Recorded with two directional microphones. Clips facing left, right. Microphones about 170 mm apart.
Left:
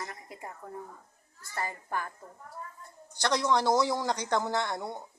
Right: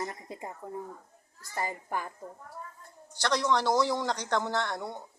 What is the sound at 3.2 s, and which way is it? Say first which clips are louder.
Speech: even; 15° left (ahead or behind).